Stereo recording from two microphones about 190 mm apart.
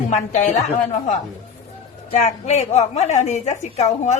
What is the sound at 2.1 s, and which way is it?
A woman's voice, 35° left (ahead or behind).